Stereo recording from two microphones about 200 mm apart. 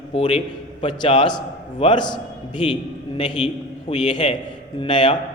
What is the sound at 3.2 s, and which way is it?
A man's voice, 25° left (ahead or behind).